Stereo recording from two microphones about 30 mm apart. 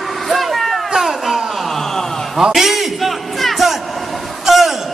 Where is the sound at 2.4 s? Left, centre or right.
Centre.